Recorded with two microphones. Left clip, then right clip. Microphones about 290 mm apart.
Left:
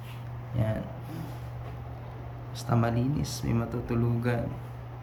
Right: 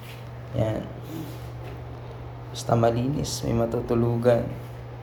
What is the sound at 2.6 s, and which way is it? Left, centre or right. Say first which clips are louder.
Speech: right 7 dB; centre.